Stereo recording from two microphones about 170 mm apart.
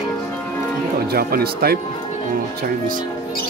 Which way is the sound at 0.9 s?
65° right (ahead or behind).